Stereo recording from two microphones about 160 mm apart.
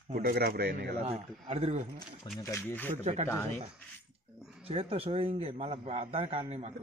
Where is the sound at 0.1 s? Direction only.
75° right (ahead or behind).